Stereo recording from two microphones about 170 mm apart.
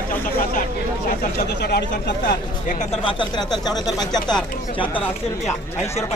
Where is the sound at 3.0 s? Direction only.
30° left (ahead or behind).